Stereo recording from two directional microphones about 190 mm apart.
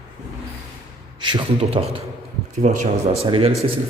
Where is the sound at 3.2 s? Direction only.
30° right (ahead or behind).